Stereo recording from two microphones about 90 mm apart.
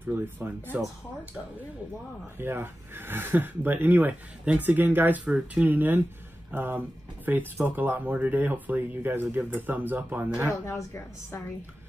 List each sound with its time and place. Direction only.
0.0 s speech: 20° right (ahead or behind)
2.3 s speech: 25° right (ahead or behind)
10.5 s a woman's voice: 35° left (ahead or behind)